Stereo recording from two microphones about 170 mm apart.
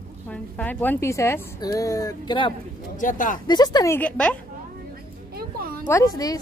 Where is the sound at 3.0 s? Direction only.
50° left (ahead or behind).